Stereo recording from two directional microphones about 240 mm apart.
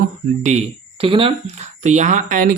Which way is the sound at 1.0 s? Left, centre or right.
Right.